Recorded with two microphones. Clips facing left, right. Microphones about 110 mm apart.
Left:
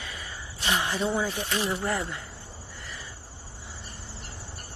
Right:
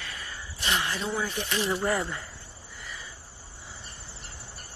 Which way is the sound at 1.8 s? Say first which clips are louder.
Right 2 dB; centre (ahead or behind).